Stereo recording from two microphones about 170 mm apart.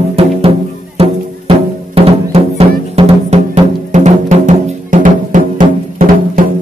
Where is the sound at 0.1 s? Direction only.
35° right (ahead or behind).